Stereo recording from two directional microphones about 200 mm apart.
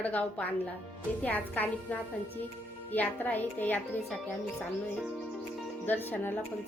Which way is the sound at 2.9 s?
10° left (ahead or behind).